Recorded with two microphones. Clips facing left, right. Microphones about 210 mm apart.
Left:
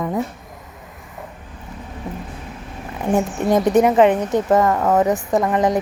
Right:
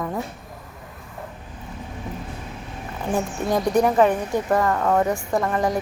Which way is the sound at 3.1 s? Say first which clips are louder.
Left 5 dB; 20° left (ahead or behind).